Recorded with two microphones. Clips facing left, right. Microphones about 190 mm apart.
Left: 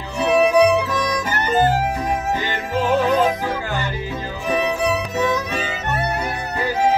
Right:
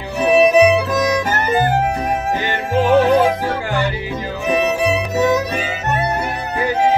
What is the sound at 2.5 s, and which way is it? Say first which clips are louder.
Music: right 7 dB; 65° right (ahead or behind).